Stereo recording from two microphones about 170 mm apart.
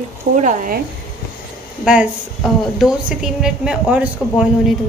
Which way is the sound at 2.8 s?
5° right (ahead or behind).